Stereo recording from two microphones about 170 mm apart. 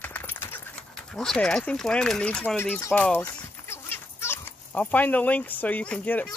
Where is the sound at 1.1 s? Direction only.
5° left (ahead or behind).